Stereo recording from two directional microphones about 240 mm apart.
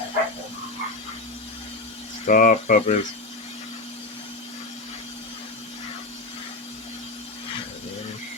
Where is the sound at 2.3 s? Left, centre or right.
Left.